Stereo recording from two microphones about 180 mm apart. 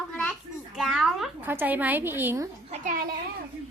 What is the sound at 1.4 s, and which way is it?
A woman's voice, 10° right (ahead or behind).